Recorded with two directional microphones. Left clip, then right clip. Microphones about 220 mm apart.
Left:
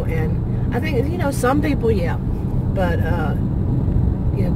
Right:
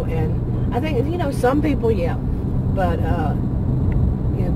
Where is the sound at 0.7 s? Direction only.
20° left (ahead or behind).